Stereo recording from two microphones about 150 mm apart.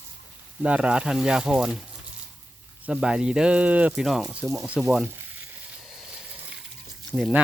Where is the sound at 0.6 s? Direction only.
5° right (ahead or behind).